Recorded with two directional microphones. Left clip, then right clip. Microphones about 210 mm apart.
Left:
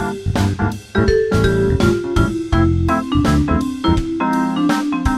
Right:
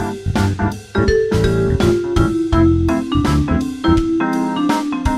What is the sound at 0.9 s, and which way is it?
Music, centre (ahead or behind).